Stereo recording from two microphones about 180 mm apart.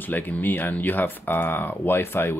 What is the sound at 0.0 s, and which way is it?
Speech, 10° left (ahead or behind).